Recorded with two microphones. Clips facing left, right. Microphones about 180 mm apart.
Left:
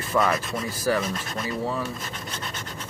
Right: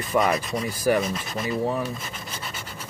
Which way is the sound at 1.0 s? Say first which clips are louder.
Right 2 dB; centre (ahead or behind).